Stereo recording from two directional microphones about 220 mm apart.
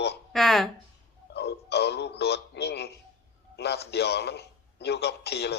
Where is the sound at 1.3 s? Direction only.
50° left (ahead or behind).